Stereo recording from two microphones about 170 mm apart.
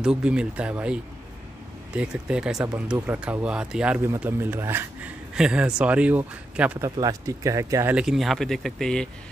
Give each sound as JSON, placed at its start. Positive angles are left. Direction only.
{"t": 0.0, "sound": "speech", "side_deg": -5}
{"t": 7.0, "sound": "speech", "side_deg": -20}
{"t": 7.9, "sound": "speech", "side_deg": -5}